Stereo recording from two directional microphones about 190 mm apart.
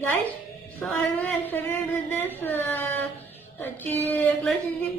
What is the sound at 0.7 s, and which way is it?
Speech, 10° left (ahead or behind).